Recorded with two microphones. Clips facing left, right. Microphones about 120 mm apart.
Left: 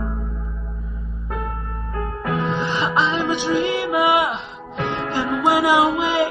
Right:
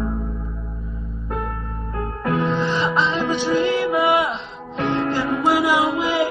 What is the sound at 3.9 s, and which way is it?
Music, 5° left (ahead or behind).